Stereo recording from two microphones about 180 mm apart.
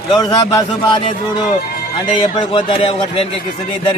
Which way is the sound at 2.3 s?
30° left (ahead or behind).